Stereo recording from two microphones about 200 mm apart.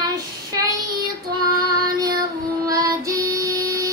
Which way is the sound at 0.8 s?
20° right (ahead or behind).